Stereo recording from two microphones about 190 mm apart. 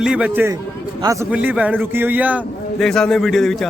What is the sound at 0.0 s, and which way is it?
Speech, 5° right (ahead or behind).